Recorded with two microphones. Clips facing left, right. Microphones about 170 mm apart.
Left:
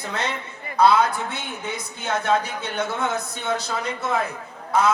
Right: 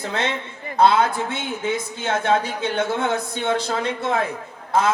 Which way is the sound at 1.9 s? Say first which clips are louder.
Even; 25° right (ahead or behind).